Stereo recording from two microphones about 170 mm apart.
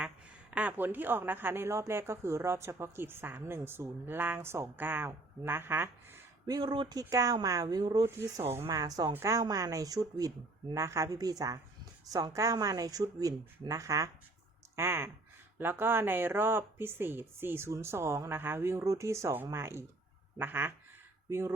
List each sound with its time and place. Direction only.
0.5 s a woman's voice: 10° right (ahead or behind)
6.5 s a woman's voice: 25° right (ahead or behind)